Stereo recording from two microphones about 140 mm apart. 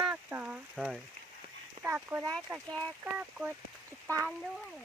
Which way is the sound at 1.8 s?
15° right (ahead or behind).